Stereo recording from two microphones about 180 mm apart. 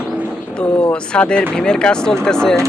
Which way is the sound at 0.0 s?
5° right (ahead or behind).